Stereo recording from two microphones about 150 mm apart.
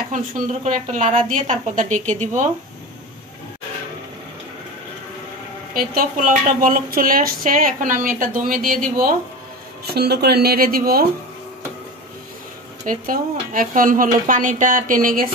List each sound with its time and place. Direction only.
0.1 s speech: 60° right (ahead or behind)
5.8 s speech: 65° right (ahead or behind)
9.8 s speech: 90° right
12.8 s speech: 65° right (ahead or behind)